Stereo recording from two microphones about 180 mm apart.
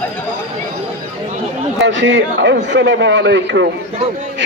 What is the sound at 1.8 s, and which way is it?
A man's voice, 90° right.